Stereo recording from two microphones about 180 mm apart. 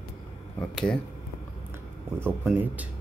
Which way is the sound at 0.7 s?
5° left (ahead or behind).